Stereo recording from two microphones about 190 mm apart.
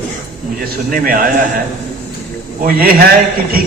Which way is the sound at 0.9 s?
45° right (ahead or behind).